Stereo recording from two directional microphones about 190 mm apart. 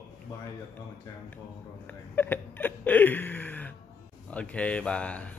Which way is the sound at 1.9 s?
10° left (ahead or behind).